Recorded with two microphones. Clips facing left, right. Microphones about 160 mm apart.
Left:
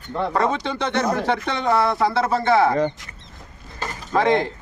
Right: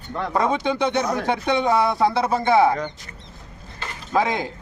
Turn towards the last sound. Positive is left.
turn(degrees=-10)  # may be behind; listen again after turning